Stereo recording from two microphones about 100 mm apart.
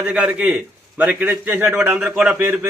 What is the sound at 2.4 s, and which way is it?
Speech, 20° right (ahead or behind).